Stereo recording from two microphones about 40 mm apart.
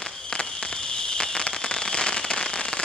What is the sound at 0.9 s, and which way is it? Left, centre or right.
Fireworks, centre.